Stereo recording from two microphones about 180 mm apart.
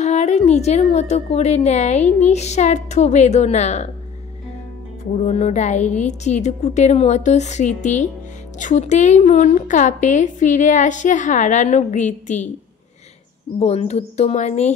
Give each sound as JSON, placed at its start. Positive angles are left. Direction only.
{"t": 0.0, "sound": "a woman's voice", "side_deg": 40}
{"t": 5.1, "sound": "a woman's voice", "side_deg": 40}
{"t": 13.6, "sound": "a woman's voice", "side_deg": 35}